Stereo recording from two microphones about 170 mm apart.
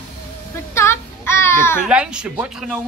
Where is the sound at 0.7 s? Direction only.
15° left (ahead or behind).